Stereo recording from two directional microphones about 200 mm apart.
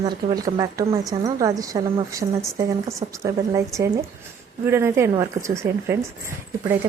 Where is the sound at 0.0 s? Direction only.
20° right (ahead or behind).